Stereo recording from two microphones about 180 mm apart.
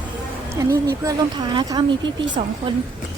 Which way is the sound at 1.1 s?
25° right (ahead or behind).